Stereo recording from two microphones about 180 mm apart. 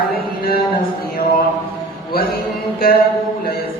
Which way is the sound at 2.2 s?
55° left (ahead or behind).